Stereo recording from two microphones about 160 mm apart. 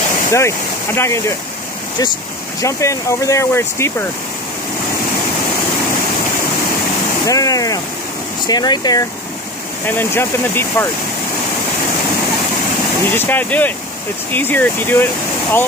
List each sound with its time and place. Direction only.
0.3 s speech: 15° left (ahead or behind)
2.6 s speech: 20° left (ahead or behind)
7.2 s speech: 20° left (ahead or behind)
9.8 s speech: 15° left (ahead or behind)
13.1 s speech: 10° left (ahead or behind)